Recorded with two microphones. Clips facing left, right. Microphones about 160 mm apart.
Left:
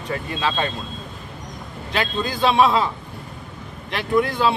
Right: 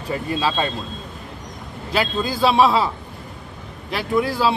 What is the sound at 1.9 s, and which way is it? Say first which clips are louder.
Speech: right 2 dB; 5° right (ahead or behind).